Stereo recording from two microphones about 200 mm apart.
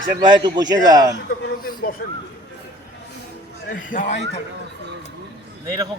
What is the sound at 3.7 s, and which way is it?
Speech, 45° left (ahead or behind).